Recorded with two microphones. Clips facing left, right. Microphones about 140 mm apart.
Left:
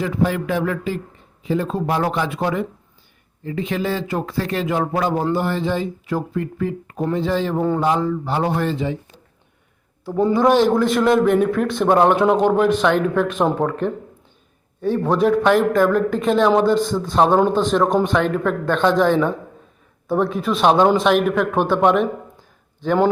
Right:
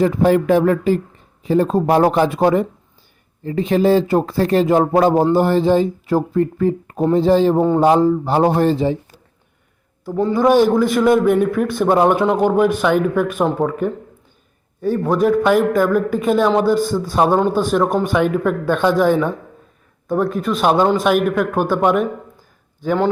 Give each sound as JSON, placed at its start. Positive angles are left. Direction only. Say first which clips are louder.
{"t": 0.0, "sound": "speech", "louder": "right 7 dB", "side_deg": -40}
{"t": 10.3, "sound": "a man's voice", "louder": "right 3 dB", "side_deg": -5}